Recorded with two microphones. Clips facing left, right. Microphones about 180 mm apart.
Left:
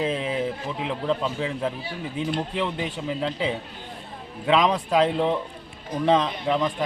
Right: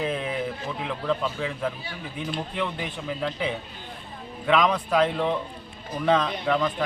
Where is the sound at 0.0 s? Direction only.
25° left (ahead or behind).